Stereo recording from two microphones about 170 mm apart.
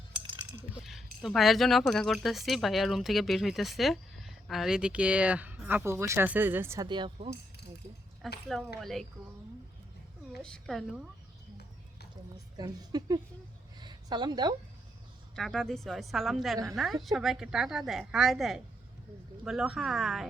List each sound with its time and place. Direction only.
0.7 s speech: centre (ahead or behind)
6.8 s a woman's voice: 25° right (ahead or behind)
8.2 s speech: centre (ahead or behind)
10.3 s speech: 5° left (ahead or behind)
12.5 s a woman's voice: 25° right (ahead or behind)
13.7 s a sound: 25° right (ahead or behind)
15.4 s speech: centre (ahead or behind)